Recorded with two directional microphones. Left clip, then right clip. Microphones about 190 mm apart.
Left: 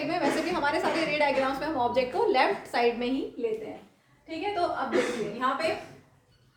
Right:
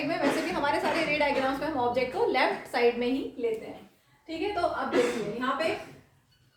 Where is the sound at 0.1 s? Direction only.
20° left (ahead or behind).